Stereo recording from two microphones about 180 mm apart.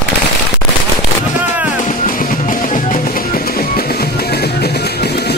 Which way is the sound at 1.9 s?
50° left (ahead or behind).